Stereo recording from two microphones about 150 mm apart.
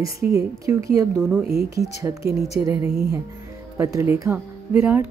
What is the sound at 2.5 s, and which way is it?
A woman's voice, 20° right (ahead or behind).